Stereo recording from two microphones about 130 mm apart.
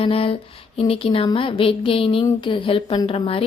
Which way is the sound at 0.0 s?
45° left (ahead or behind).